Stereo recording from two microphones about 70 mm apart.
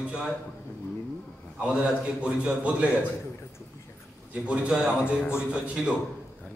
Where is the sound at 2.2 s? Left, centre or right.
Centre.